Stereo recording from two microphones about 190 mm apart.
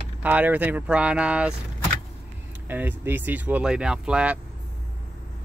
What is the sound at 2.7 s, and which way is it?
Speech, 10° right (ahead or behind).